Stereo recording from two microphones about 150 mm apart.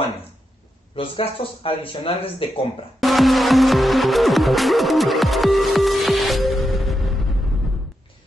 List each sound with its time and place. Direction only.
0.9 s speech: 35° left (ahead or behind)
3.0 s music: centre (ahead or behind)